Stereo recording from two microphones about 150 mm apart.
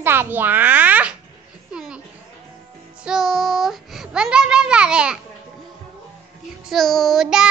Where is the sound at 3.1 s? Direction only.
Centre (ahead or behind).